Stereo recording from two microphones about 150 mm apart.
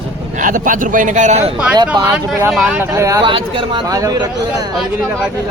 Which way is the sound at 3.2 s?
35° right (ahead or behind).